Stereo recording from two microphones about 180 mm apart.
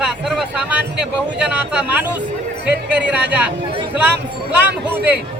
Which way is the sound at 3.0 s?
75° right (ahead or behind).